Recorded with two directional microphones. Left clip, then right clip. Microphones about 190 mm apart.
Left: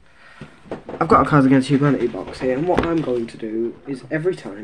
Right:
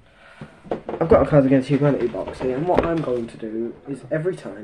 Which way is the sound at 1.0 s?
30° left (ahead or behind).